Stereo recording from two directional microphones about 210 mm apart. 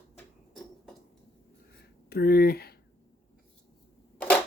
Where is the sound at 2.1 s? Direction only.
50° left (ahead or behind).